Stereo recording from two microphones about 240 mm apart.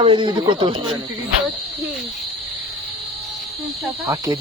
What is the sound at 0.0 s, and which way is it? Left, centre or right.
Speech, centre.